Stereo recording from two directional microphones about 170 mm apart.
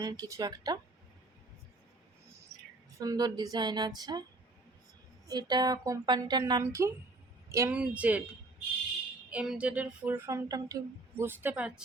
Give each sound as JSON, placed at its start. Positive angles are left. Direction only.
{"t": 0.0, "sound": "speech", "side_deg": -20}
{"t": 2.5, "sound": "a sound", "side_deg": -20}
{"t": 3.0, "sound": "speech", "side_deg": -20}
{"t": 5.3, "sound": "speech", "side_deg": -25}
{"t": 9.3, "sound": "speech", "side_deg": -5}